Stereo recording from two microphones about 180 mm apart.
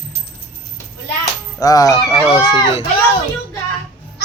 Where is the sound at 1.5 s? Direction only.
20° left (ahead or behind).